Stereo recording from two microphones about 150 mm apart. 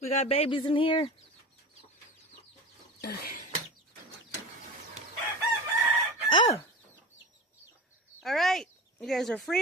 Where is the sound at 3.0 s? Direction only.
90° left.